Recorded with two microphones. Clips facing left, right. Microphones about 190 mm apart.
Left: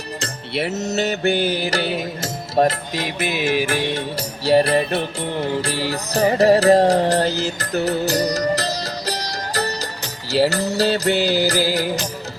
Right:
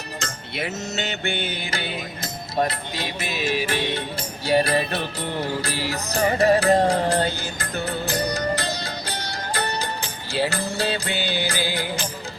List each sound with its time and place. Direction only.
0.2 s music: 35° left (ahead or behind)
3.2 s music: 60° left (ahead or behind)
4.4 s music: 30° left (ahead or behind)